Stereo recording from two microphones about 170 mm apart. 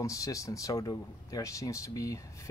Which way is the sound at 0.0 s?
20° left (ahead or behind).